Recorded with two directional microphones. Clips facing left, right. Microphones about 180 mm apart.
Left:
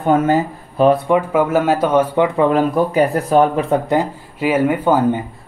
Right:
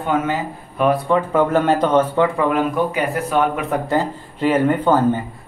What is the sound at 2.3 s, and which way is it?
Speech, 30° left (ahead or behind).